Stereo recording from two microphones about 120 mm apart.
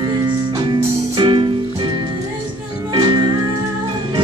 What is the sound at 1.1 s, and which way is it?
Music, 40° right (ahead or behind).